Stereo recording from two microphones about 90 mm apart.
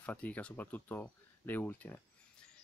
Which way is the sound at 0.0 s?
15° left (ahead or behind).